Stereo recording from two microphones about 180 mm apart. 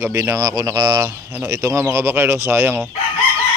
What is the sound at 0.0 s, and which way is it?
Speech, 15° right (ahead or behind).